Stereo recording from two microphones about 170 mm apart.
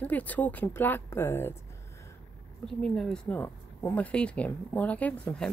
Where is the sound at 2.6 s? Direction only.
5° left (ahead or behind).